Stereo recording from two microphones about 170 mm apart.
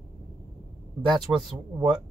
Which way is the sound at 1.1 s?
Centre (ahead or behind).